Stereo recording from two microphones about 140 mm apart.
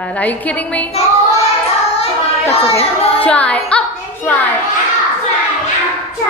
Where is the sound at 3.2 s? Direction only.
10° left (ahead or behind).